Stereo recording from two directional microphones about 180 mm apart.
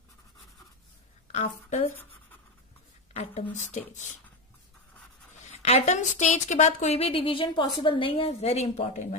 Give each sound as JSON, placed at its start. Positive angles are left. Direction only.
{"t": 1.3, "sound": "a woman's voice", "side_deg": 40}
{"t": 3.1, "sound": "a woman's voice", "side_deg": 40}
{"t": 5.3, "sound": "a woman's voice", "side_deg": 40}